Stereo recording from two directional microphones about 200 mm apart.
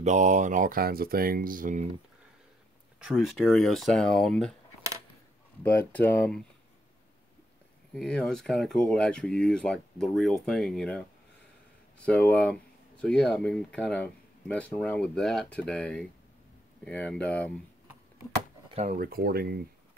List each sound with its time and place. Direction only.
0.0 s speech: 35° right (ahead or behind)
3.0 s speech: centre (ahead or behind)
5.6 s speech: 10° left (ahead or behind)
7.9 s speech: 5° left (ahead or behind)
18.7 s speech: 35° right (ahead or behind)